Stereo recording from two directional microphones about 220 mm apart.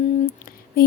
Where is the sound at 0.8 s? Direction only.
40° left (ahead or behind).